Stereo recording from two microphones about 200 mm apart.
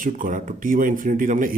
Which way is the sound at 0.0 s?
40° right (ahead or behind).